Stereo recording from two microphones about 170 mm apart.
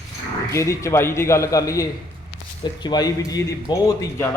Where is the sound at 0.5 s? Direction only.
15° left (ahead or behind).